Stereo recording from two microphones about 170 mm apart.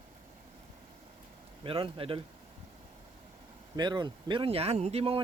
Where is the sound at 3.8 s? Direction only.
25° right (ahead or behind).